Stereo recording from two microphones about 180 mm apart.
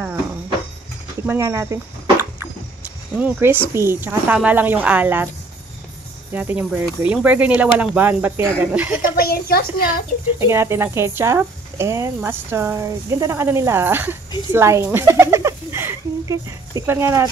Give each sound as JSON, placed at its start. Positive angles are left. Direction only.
{"t": 1.2, "sound": "speech", "side_deg": -15}
{"t": 6.3, "sound": "speech", "side_deg": -10}
{"t": 9.2, "sound": "a woman's voice", "side_deg": 55}
{"t": 10.4, "sound": "speech", "side_deg": -15}
{"t": 14.5, "sound": "bird", "side_deg": -15}